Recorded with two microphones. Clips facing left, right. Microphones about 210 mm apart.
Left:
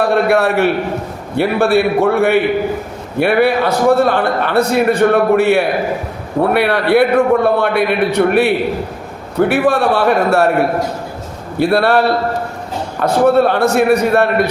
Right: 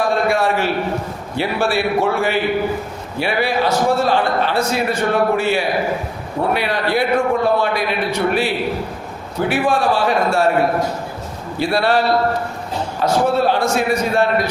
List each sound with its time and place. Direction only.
0.0 s a man's voice: 65° left (ahead or behind)
11.6 s a man's voice: 55° left (ahead or behind)